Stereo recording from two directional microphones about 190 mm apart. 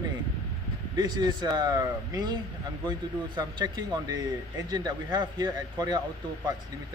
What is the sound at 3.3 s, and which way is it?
Speech, 20° right (ahead or behind).